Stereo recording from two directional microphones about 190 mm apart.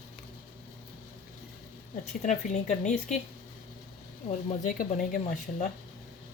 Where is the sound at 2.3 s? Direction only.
40° left (ahead or behind).